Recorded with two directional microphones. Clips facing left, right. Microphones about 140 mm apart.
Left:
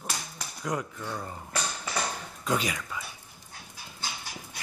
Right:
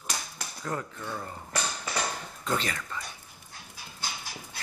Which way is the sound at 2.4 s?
10° left (ahead or behind).